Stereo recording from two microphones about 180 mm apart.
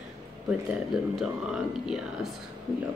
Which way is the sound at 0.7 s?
5° right (ahead or behind).